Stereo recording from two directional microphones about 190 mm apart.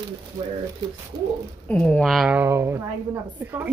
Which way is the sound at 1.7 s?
5° left (ahead or behind).